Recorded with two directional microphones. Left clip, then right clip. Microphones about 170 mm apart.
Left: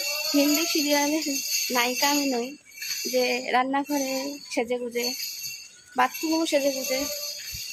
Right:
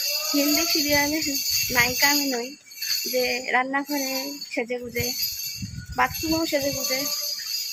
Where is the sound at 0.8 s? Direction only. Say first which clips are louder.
Right 1 dB; 20° left (ahead or behind).